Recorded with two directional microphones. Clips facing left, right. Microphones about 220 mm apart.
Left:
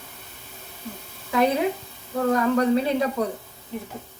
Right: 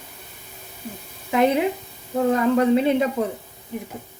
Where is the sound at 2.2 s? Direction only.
20° right (ahead or behind).